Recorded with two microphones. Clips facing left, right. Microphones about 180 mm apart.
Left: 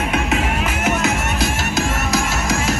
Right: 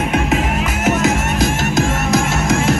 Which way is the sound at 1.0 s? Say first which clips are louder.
Right 4 dB; 45° right (ahead or behind).